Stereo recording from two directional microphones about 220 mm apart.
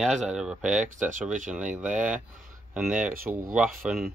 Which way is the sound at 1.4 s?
5° right (ahead or behind).